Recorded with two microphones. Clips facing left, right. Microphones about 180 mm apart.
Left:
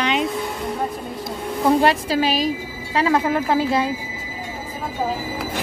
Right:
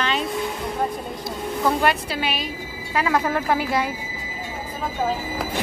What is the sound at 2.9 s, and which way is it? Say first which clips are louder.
Speech: left 3 dB; 25° left (ahead or behind).